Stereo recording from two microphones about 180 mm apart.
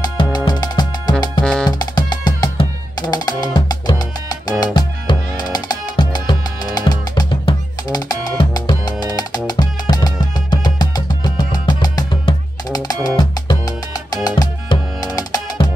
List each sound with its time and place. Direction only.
0.0 s music: 20° left (ahead or behind)
1.4 s music: 5° left (ahead or behind)
1.7 s music: 20° left (ahead or behind)